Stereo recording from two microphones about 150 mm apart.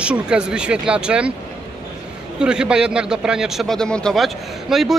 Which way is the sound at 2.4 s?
5° right (ahead or behind).